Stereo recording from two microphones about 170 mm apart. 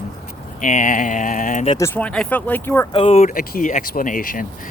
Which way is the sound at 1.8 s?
10° left (ahead or behind).